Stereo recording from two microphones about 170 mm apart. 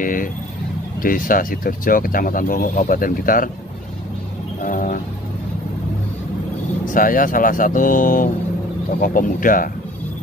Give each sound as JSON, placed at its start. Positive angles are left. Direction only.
{"t": 0.0, "sound": "speech", "side_deg": 55}
{"t": 4.6, "sound": "vehicle", "side_deg": 50}
{"t": 6.9, "sound": "speech", "side_deg": 55}